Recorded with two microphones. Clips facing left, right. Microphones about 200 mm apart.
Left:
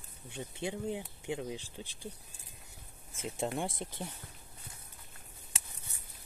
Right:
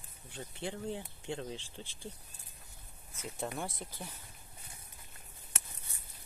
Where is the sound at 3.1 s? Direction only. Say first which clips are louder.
Left 4 dB; 25° left (ahead or behind).